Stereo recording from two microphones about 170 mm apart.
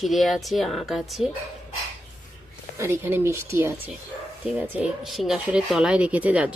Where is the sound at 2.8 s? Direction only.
15° right (ahead or behind).